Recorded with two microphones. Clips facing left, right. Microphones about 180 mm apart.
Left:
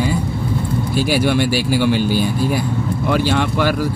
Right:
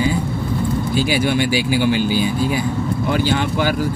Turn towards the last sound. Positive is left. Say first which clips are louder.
# left 1 dB
turn(degrees=65)  # may be behind; listen again after turning